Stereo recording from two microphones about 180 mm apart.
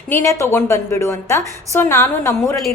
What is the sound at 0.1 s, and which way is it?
A woman's voice, 15° left (ahead or behind).